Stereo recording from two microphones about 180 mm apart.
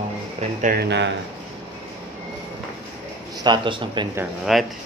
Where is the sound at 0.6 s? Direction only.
60° right (ahead or behind).